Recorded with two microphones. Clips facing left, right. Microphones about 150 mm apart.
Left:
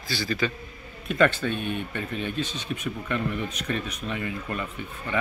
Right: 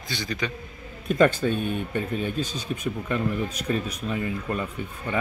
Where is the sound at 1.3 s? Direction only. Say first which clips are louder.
Right 3 dB; 40° right (ahead or behind).